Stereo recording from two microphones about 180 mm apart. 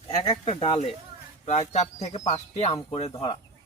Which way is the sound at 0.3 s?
35° left (ahead or behind).